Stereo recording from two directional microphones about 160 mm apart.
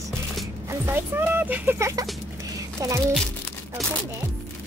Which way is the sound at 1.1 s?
10° right (ahead or behind).